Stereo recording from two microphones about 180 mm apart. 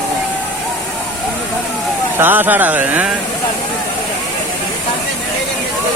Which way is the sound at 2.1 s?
10° right (ahead or behind).